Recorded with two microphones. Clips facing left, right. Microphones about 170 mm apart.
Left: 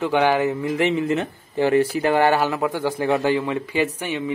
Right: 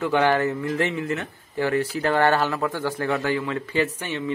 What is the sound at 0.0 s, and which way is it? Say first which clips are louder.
A man's voice: left 2 dB; 15° left (ahead or behind).